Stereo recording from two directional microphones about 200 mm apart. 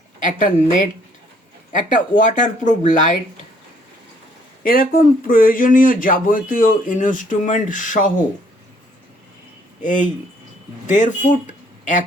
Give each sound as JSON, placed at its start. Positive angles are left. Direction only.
{"t": 0.2, "sound": "speech", "side_deg": 40}
{"t": 4.6, "sound": "speech", "side_deg": 45}
{"t": 9.8, "sound": "speech", "side_deg": 40}